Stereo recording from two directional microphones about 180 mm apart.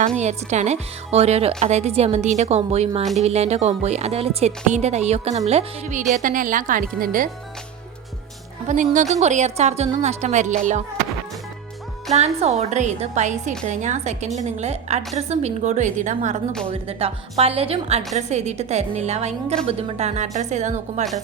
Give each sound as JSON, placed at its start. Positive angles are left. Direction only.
{"t": 0.2, "sound": "a woman's voice", "side_deg": -40}
{"t": 8.6, "sound": "a woman's voice", "side_deg": -45}
{"t": 12.1, "sound": "speech", "side_deg": -35}
{"t": 16.6, "sound": "speech", "side_deg": -30}